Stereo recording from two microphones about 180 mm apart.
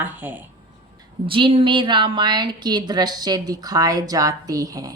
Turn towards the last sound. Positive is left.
turn(degrees=-20)  # may be behind; listen again after turning